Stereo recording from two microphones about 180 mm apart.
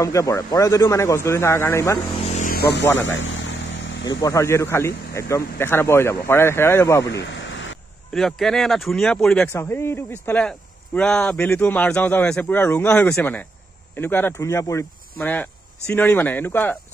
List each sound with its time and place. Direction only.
0.0 s speech: 20° left (ahead or behind)
2.2 s a sound: 40° left (ahead or behind)
2.5 s speech: 65° left (ahead or behind)
3.2 s vehicle: 90° left
4.1 s speech: 20° left (ahead or behind)
7.2 s a sound: 90° left
8.1 s speech: centre (ahead or behind)
9.5 s speech: 15° left (ahead or behind)